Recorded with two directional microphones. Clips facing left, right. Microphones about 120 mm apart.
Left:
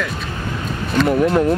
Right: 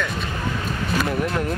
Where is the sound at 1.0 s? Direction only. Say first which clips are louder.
Left 8 dB; 30° left (ahead or behind).